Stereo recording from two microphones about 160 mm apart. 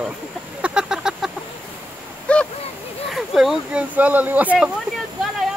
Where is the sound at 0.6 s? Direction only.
5° right (ahead or behind).